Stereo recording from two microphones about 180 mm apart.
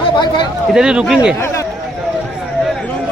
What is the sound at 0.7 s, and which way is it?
Speech, 5° right (ahead or behind).